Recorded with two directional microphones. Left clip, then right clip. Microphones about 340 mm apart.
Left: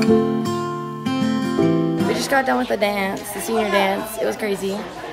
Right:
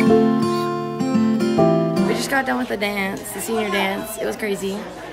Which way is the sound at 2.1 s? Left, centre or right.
Centre.